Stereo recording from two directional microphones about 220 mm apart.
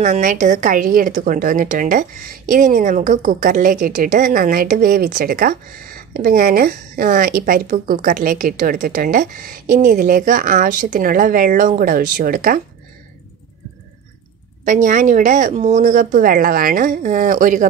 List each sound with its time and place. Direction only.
0.0 s a woman's voice: 35° right (ahead or behind)
14.6 s a woman's voice: 35° right (ahead or behind)